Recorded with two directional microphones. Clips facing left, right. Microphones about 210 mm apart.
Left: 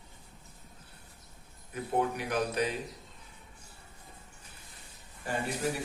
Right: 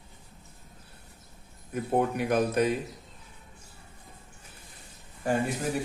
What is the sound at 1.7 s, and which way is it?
A man's voice, 50° right (ahead or behind).